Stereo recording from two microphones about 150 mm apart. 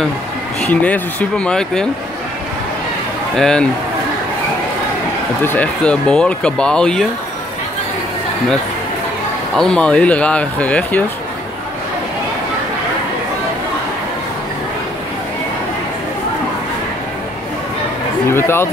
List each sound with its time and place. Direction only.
0.6 s speech: 10° left (ahead or behind)
3.3 s speech: 5° left (ahead or behind)
5.4 s speech: 10° left (ahead or behind)
9.6 s speech: 5° left (ahead or behind)
18.3 s speech: 15° left (ahead or behind)